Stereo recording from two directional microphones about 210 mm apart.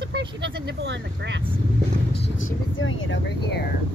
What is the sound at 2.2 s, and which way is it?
Speech, 65° left (ahead or behind).